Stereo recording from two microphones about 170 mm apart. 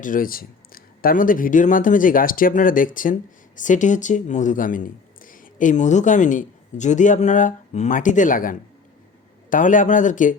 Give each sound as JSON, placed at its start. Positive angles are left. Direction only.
{"t": 0.0, "sound": "speech", "side_deg": 55}